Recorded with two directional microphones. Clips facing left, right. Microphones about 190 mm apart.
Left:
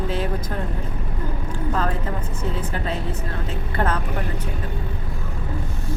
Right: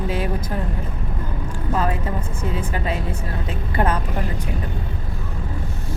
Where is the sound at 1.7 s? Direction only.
10° right (ahead or behind).